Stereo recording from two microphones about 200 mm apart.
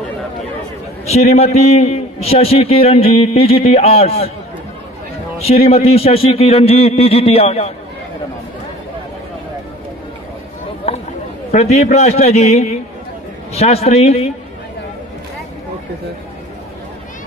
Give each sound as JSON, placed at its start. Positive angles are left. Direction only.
{"t": 1.0, "sound": "a man's voice", "side_deg": 30}
{"t": 5.4, "sound": "a man's voice", "side_deg": 30}
{"t": 11.5, "sound": "a man's voice", "side_deg": 30}